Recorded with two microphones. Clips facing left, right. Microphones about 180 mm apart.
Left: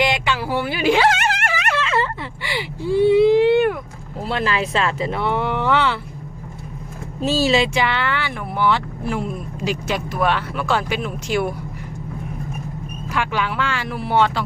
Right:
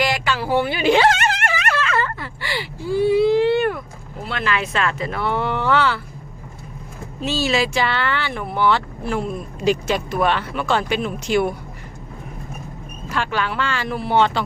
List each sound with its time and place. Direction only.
0.3 s a sound: 5° left (ahead or behind)
4.2 s speech: 35° left (ahead or behind); by 6.0 s 20° left (ahead or behind)
7.2 s speech: 40° left (ahead or behind)
7.5 s speech: 20° left (ahead or behind); by 11.5 s 5° left (ahead or behind)
13.1 s speech: 15° left (ahead or behind)